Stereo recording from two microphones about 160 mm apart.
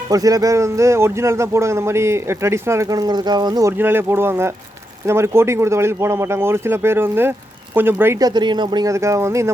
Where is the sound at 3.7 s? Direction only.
15° right (ahead or behind).